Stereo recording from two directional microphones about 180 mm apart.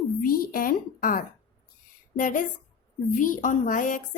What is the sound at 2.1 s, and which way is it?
A woman's voice, 45° left (ahead or behind).